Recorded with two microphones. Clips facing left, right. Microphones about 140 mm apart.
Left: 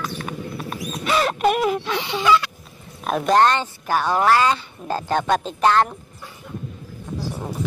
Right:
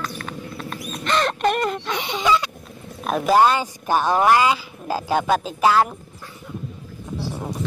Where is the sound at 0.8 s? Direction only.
5° left (ahead or behind).